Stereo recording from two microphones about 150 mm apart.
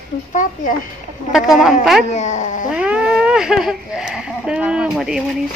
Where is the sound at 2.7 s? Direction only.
5° right (ahead or behind).